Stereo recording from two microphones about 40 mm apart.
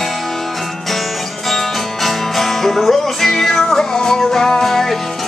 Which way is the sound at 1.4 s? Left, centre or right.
Centre.